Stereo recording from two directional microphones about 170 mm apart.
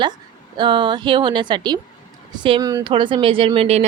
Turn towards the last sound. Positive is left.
turn(degrees=-35)  # may be behind; listen again after turning